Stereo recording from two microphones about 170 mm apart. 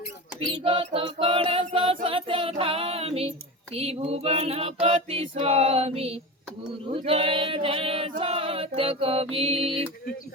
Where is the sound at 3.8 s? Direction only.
35° right (ahead or behind).